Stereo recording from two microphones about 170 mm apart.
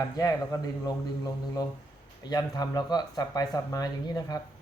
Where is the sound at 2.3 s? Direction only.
25° left (ahead or behind).